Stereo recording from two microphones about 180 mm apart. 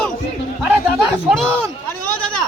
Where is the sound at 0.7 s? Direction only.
10° right (ahead or behind).